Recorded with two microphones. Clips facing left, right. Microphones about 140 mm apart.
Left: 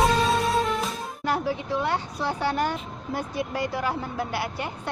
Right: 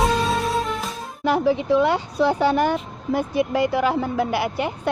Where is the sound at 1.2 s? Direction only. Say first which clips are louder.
Right 8 dB; 90° right; by 3.6 s 65° right (ahead or behind).